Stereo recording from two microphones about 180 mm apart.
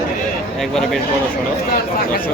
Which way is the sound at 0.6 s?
Centre (ahead or behind).